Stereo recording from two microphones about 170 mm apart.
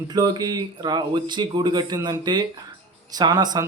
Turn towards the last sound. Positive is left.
turn(degrees=-20)  # may be behind; listen again after turning